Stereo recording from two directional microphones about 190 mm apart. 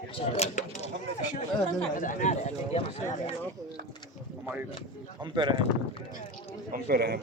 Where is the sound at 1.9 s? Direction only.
45° left (ahead or behind).